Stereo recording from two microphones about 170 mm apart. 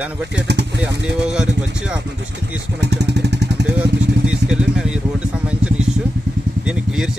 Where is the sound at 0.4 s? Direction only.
85° right.